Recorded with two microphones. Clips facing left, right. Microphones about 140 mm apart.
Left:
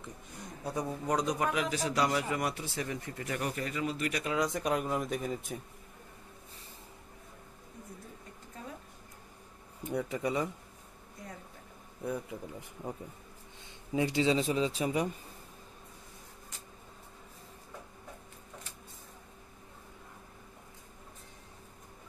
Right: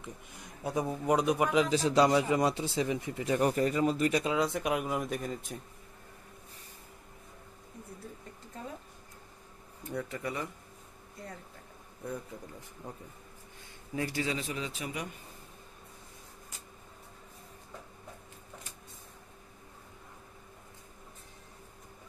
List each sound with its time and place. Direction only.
0.7 s a man's voice: 15° right (ahead or behind)
1.5 s speech: 25° right (ahead or behind)
3.3 s speech: 35° right (ahead or behind)
4.1 s speech: 25° right (ahead or behind)
4.6 s speech: 5° right (ahead or behind)
9.8 s speech: 15° left (ahead or behind)
12.1 s speech: 10° left (ahead or behind)
13.9 s speech: 20° left (ahead or behind)